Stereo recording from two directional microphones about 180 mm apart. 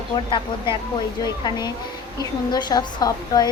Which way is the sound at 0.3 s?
25° left (ahead or behind).